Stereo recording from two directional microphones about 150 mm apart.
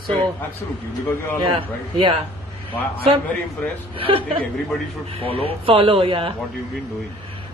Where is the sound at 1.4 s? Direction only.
35° right (ahead or behind).